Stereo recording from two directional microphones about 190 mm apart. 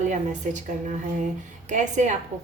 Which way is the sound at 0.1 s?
40° right (ahead or behind).